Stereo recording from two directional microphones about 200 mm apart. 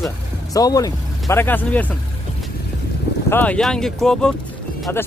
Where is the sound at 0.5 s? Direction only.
15° left (ahead or behind).